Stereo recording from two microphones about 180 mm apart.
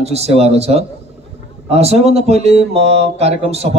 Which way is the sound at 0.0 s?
35° right (ahead or behind).